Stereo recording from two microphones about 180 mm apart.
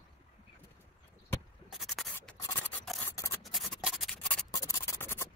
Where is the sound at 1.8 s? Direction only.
Centre (ahead or behind).